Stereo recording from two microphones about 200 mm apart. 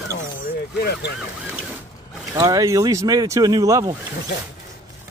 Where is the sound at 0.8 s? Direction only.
50° left (ahead or behind).